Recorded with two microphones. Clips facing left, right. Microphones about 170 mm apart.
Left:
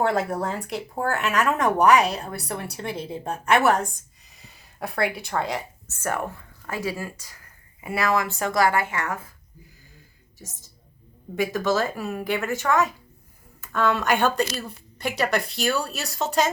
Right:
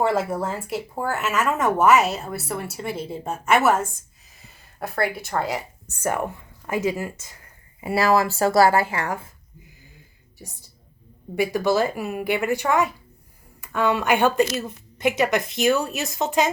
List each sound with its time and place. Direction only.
0.0 s speech: centre (ahead or behind); by 9.3 s 30° right (ahead or behind)
11.3 s a woman's voice: 15° right (ahead or behind)